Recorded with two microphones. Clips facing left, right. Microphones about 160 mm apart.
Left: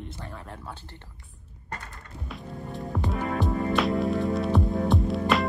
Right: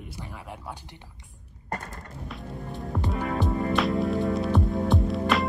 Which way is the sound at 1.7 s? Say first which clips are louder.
Right 5 dB; 40° right (ahead or behind).